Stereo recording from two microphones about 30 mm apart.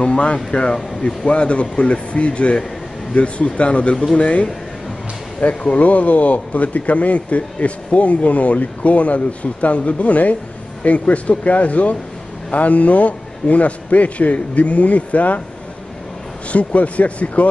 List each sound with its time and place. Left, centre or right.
0.0 s a man's voice: left
5.7 s a man's voice: left
16.5 s speech: left